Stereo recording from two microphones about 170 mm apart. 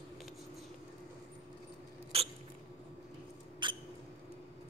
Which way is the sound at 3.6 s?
25° right (ahead or behind).